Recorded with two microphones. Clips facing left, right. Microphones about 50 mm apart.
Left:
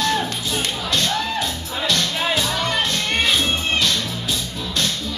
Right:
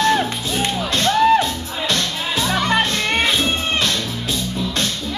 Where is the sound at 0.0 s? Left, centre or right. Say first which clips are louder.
Right 4 dB; right.